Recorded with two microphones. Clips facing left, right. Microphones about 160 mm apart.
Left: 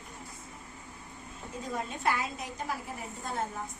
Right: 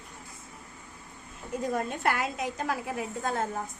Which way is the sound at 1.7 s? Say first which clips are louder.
Right 1 dB; 65° right (ahead or behind).